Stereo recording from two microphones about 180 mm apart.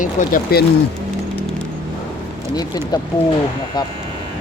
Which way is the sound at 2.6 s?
20° left (ahead or behind).